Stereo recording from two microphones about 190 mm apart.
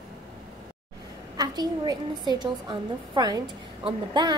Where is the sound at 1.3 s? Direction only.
20° right (ahead or behind).